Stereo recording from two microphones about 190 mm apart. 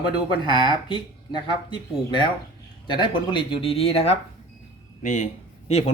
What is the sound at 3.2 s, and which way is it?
A man's voice, 25° left (ahead or behind).